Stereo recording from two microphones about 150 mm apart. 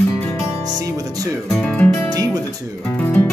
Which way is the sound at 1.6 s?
10° left (ahead or behind).